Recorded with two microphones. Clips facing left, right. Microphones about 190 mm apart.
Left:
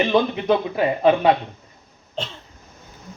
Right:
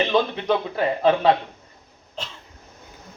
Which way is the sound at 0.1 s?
15° left (ahead or behind).